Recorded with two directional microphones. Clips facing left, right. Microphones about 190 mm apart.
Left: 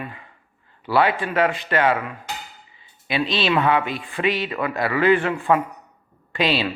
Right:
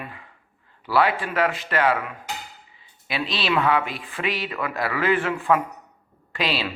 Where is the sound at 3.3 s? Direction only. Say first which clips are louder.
Left 2 dB; 25° left (ahead or behind).